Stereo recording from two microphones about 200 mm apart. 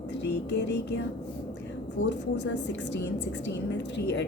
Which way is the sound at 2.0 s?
60° left (ahead or behind).